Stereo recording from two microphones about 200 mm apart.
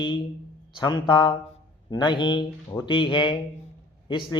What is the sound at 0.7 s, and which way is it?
A man's voice, 20° left (ahead or behind).